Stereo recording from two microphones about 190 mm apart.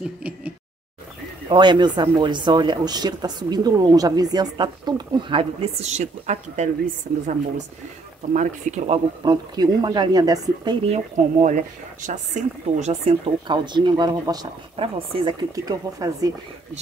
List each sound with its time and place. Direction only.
1.5 s speech: 25° right (ahead or behind)
8.3 s speech: 40° right (ahead or behind)
9.2 s speech: 20° right (ahead or behind)